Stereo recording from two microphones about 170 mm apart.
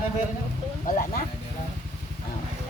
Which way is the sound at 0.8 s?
50° left (ahead or behind).